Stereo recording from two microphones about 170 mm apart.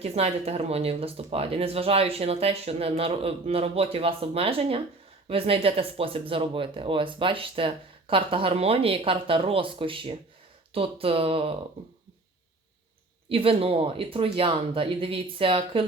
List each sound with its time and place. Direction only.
0.0 s speech: 35° right (ahead or behind)
13.2 s speech: 35° right (ahead or behind)